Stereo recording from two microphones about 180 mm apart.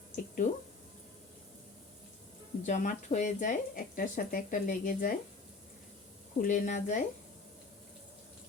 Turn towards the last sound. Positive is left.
turn(degrees=45)  # may be behind; listen again after turning